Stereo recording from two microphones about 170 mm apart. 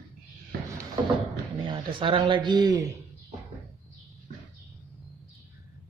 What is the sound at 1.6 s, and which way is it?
Speech, 30° right (ahead or behind).